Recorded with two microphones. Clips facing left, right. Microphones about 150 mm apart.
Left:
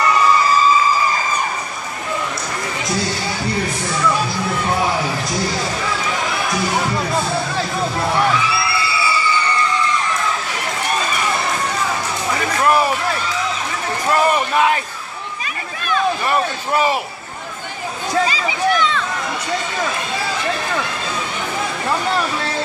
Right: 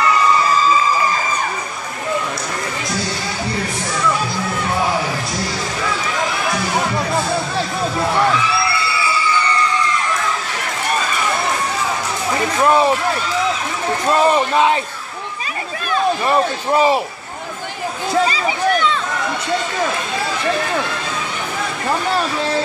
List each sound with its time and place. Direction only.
12.6 s a sound: 25° right (ahead or behind)
14.1 s speech: 25° right (ahead or behind)
15.9 s speech: 25° right (ahead or behind)
18.2 s speech: 40° right (ahead or behind)